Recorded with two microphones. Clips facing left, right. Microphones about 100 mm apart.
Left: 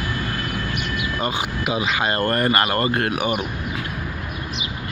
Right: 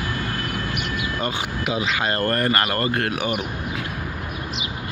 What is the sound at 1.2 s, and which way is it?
Speech, 5° left (ahead or behind).